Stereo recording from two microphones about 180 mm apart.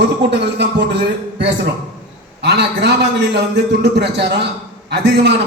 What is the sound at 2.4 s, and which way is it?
A man's voice, 70° right (ahead or behind).